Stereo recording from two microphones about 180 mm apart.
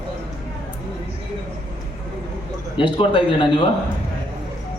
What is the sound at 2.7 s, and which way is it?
Speech, 25° left (ahead or behind).